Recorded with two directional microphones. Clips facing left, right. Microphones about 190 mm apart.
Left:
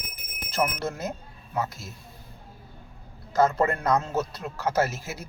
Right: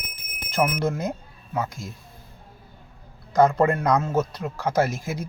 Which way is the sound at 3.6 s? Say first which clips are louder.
Right 3 dB; 10° right (ahead or behind).